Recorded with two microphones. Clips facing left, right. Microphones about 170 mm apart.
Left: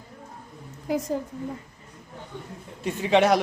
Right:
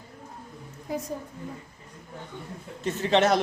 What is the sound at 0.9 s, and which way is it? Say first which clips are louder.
Speech: left 5 dB; 90° left.